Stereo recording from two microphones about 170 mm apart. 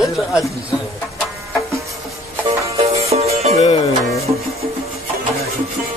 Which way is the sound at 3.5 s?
40° left (ahead or behind).